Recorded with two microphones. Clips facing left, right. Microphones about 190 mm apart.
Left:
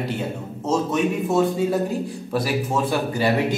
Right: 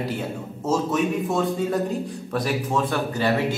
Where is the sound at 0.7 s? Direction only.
Centre (ahead or behind).